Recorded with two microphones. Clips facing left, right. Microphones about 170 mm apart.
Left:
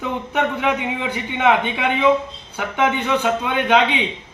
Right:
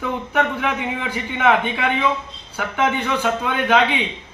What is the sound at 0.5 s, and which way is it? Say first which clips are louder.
A man's voice: left 2 dB; 15° left (ahead or behind).